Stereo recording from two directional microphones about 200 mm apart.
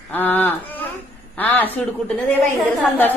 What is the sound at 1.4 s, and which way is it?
Babbling, 10° left (ahead or behind).